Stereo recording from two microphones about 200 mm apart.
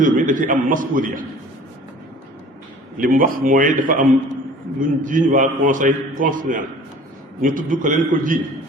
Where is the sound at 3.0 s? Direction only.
45° right (ahead or behind).